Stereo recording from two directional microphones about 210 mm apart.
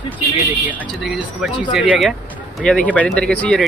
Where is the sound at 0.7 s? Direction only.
Centre (ahead or behind).